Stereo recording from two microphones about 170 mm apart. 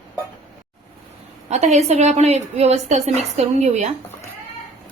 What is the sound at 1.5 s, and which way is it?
A woman's voice, 40° right (ahead or behind).